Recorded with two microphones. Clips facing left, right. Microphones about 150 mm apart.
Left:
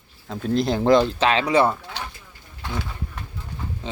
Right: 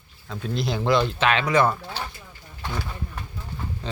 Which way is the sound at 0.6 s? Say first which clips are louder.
Left 4 dB; 45° left (ahead or behind).